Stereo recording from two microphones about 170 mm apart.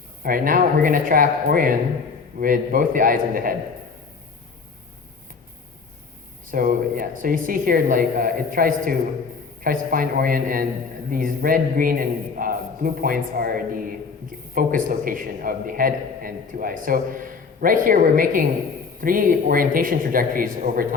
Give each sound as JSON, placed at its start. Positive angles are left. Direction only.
{"t": 0.2, "sound": "a man's voice", "side_deg": -55}
{"t": 6.5, "sound": "a man's voice", "side_deg": -55}